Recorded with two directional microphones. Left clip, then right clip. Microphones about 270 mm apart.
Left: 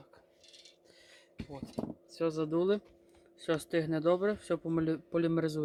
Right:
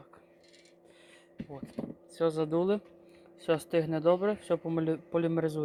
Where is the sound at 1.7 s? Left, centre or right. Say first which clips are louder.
Left 1 dB; centre.